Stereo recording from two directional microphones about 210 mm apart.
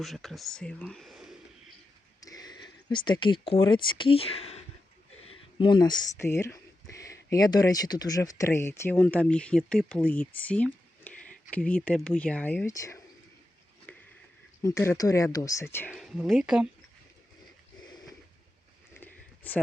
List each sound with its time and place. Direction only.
0.0 s speech: centre (ahead or behind)
2.2 s speech: 20° left (ahead or behind)
13.9 s a sound: 10° left (ahead or behind)
14.6 s speech: 15° left (ahead or behind)
15.9 s speech: centre (ahead or behind)
18.9 s a sound: 10° left (ahead or behind)